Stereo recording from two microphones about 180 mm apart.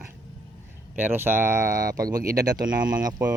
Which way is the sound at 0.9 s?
10° right (ahead or behind).